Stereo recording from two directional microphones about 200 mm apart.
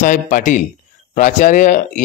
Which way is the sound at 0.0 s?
40° left (ahead or behind).